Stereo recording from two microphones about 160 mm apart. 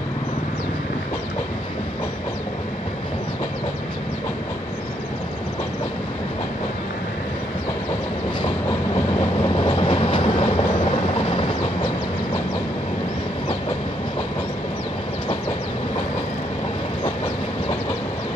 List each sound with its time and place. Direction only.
9.4 s train: 30° left (ahead or behind)